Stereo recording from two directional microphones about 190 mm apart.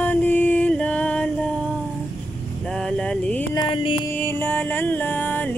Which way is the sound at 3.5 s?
25° left (ahead or behind).